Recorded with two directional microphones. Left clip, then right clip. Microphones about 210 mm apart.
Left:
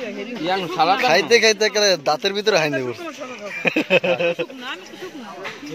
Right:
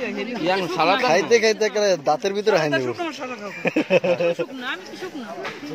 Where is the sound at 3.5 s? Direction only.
5° left (ahead or behind).